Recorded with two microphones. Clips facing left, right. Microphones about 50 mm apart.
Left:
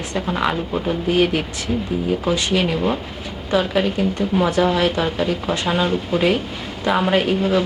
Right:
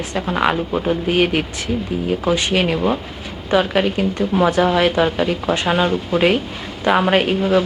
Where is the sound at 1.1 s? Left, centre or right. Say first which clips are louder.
Left 2 dB; right.